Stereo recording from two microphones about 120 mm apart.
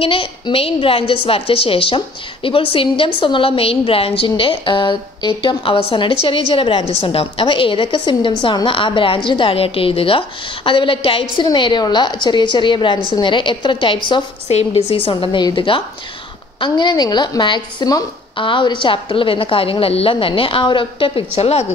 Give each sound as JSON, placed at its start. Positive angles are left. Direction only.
{"t": 0.0, "sound": "a woman's voice", "side_deg": 50}
{"t": 14.5, "sound": "a woman's voice", "side_deg": 60}
{"t": 18.3, "sound": "a woman's voice", "side_deg": 45}